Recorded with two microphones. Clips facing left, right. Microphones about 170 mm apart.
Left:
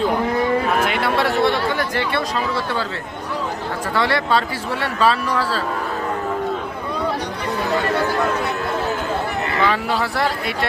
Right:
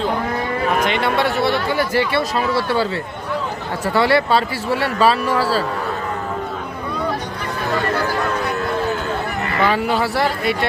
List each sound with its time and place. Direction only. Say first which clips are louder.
0.9 s speech: right 1 dB; 5° left (ahead or behind)
3.9 s speech: right 4 dB; 5° right (ahead or behind)
9.6 s speech: right 5 dB; 5° right (ahead or behind)